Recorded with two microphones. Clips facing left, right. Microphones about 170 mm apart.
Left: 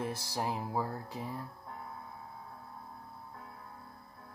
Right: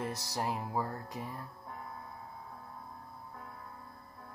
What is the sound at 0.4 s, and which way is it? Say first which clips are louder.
Music: even; 10° left (ahead or behind).